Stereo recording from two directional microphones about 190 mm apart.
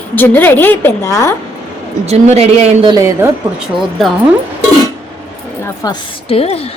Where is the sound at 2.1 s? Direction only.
35° right (ahead or behind).